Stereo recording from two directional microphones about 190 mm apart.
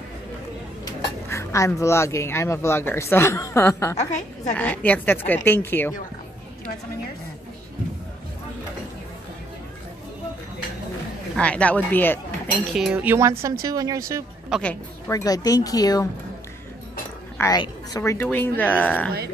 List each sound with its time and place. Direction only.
1.3 s speech: 15° left (ahead or behind)
11.3 s speech: 5° left (ahead or behind)
12.7 s speech: 5° right (ahead or behind)
14.5 s speech: 5° left (ahead or behind)
17.4 s speech: 20° left (ahead or behind)